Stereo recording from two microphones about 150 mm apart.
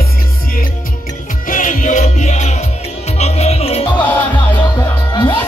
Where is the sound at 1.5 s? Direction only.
60° left (ahead or behind); by 3.8 s 45° left (ahead or behind).